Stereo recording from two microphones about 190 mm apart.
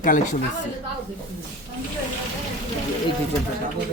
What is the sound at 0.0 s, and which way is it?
Speech, 45° left (ahead or behind).